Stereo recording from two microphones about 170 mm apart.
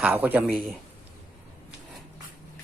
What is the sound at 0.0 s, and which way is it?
Speech, 10° right (ahead or behind).